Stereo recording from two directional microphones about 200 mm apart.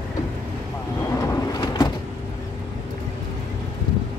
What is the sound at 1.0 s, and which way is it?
Vehicle, 15° left (ahead or behind).